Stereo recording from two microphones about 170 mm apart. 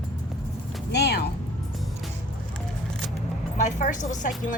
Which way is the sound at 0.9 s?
75° left (ahead or behind).